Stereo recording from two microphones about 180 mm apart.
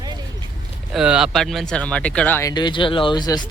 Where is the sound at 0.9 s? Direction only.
5° right (ahead or behind); by 3.5 s 25° left (ahead or behind).